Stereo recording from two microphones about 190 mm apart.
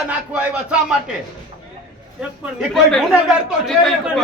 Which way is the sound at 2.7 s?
Centre (ahead or behind).